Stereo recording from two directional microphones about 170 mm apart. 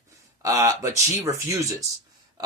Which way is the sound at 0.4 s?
20° right (ahead or behind).